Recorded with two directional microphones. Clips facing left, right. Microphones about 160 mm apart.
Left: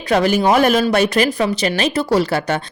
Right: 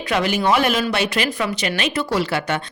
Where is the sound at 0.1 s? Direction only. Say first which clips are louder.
Left 5 dB; 40° left (ahead or behind).